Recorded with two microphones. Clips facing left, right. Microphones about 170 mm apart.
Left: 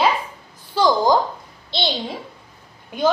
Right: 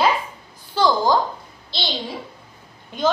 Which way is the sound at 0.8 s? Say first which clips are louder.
Left 2 dB; 15° left (ahead or behind).